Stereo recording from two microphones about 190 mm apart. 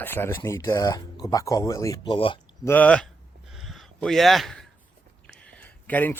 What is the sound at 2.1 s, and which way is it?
Speech, 30° left (ahead or behind).